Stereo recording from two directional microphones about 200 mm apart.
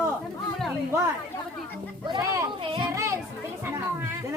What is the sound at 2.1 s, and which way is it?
Speech, 20° right (ahead or behind).